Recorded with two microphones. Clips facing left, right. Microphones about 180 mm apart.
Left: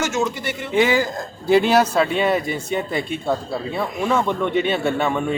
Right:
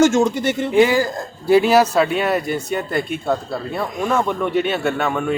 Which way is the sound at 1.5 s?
5° right (ahead or behind).